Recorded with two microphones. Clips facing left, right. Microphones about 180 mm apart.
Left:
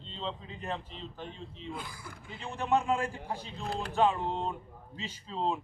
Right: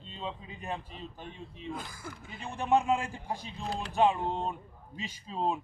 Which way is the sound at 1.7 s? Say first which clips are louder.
Right 3 dB; 45° right (ahead or behind).